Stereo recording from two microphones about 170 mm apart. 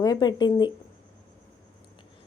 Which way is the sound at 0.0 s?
25° left (ahead or behind).